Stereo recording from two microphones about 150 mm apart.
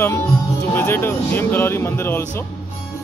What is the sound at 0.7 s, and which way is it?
Speech, 15° left (ahead or behind).